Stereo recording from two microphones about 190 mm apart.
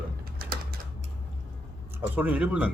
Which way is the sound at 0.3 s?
50° right (ahead or behind).